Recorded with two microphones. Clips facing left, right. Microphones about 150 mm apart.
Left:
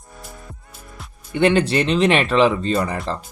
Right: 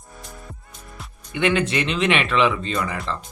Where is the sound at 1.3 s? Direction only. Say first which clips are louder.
Left 4 dB; 35° left (ahead or behind).